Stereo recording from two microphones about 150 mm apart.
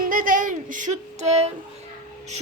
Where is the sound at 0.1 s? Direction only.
65° right (ahead or behind); by 1.5 s 45° right (ahead or behind).